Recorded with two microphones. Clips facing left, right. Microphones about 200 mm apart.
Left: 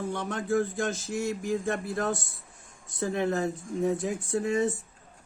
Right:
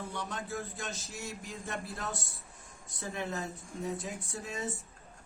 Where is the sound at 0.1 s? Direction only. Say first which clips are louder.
Left 10 dB; 50° left (ahead or behind).